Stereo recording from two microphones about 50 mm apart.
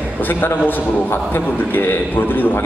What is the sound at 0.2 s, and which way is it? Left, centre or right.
A man's voice, left.